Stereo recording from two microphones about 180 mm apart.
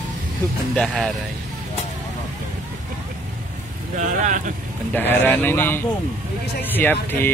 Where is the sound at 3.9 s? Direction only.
45° right (ahead or behind).